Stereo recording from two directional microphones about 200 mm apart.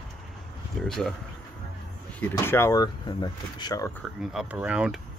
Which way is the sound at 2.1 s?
10° left (ahead or behind).